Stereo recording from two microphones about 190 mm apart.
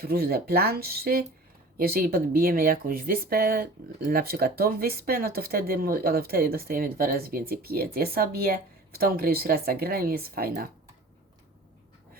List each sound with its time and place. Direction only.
0.0 s speech: 55° right (ahead or behind)